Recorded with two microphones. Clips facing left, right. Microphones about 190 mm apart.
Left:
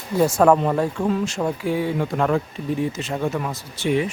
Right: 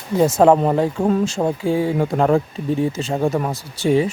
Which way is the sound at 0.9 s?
40° right (ahead or behind).